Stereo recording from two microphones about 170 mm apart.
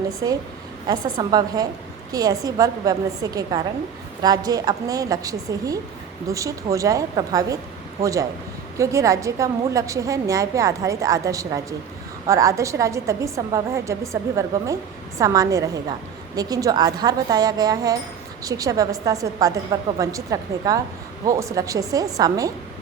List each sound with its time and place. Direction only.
0.9 s a woman's voice: 25° right (ahead or behind)